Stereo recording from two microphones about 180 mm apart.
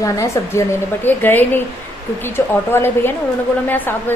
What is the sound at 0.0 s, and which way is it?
A woman's voice, 15° left (ahead or behind).